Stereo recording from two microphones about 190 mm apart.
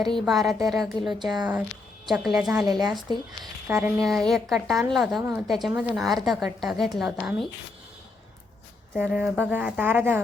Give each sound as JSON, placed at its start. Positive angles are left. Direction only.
{"t": 0.1, "sound": "a woman's voice", "side_deg": 0}
{"t": 1.2, "sound": "speech", "side_deg": -20}
{"t": 2.0, "sound": "a woman's voice", "side_deg": 0}
{"t": 2.6, "sound": "speech", "side_deg": -20}
{"t": 2.9, "sound": "a woman's voice", "side_deg": 0}
{"t": 9.0, "sound": "speech", "side_deg": -5}